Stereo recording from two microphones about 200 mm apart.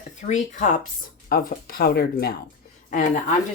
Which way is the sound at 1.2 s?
50° left (ahead or behind).